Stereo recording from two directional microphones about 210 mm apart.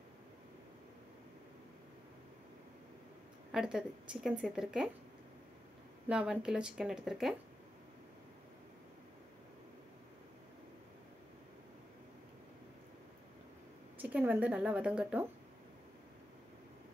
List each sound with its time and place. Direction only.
3.5 s a woman's voice: 5° right (ahead or behind)
6.0 s a woman's voice: 5° right (ahead or behind)
13.9 s a woman's voice: 5° right (ahead or behind)